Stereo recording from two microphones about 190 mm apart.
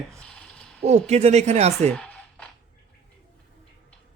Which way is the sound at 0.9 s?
35° right (ahead or behind).